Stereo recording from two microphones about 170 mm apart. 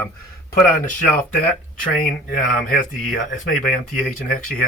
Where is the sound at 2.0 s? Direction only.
55° left (ahead or behind).